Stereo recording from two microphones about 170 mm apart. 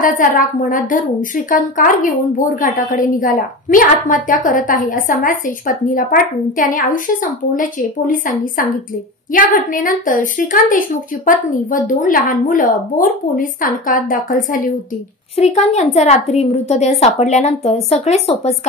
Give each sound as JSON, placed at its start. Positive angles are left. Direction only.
{"t": 0.0, "sound": "a woman's voice", "side_deg": 55}
{"t": 15.3, "sound": "speech", "side_deg": 40}